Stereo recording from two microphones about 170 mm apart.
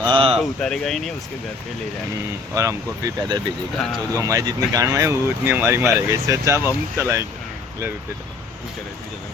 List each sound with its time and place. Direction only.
0.0 s a sound: 30° right (ahead or behind)
0.3 s speech: 5° left (ahead or behind)
2.6 s speech: 15° right (ahead or behind)